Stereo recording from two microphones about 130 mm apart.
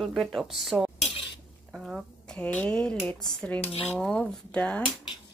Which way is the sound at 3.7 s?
50° left (ahead or behind).